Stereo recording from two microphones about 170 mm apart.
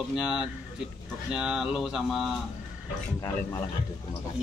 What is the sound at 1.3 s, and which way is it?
Speech, 5° right (ahead or behind).